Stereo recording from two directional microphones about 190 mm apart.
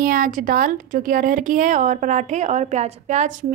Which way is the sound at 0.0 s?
50° right (ahead or behind).